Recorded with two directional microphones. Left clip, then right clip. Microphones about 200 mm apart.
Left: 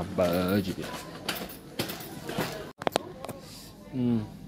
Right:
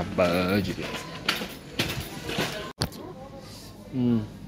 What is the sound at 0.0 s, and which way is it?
Speech, 10° left (ahead or behind).